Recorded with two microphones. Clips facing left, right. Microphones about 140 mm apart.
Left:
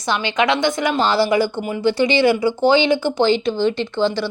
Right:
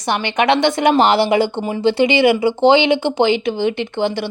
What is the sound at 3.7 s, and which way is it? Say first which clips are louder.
Speech: even; 60° right (ahead or behind).